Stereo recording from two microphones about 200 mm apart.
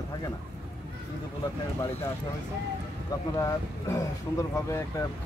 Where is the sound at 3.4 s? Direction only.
15° left (ahead or behind).